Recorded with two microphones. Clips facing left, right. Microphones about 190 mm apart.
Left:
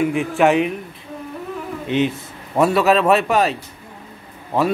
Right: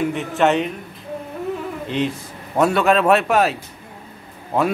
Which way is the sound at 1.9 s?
5° left (ahead or behind).